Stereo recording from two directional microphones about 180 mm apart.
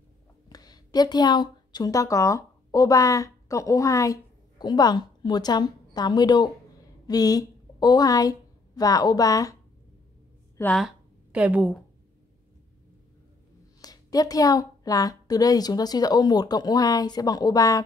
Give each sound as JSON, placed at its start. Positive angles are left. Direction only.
{"t": 0.5, "sound": "a woman's voice", "side_deg": 20}
{"t": 10.6, "sound": "speech", "side_deg": 5}
{"t": 11.3, "sound": "a woman's voice", "side_deg": -5}
{"t": 13.7, "sound": "a woman's voice", "side_deg": 20}